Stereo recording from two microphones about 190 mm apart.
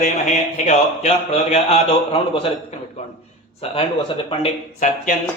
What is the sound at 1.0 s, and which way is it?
Speech, 35° left (ahead or behind).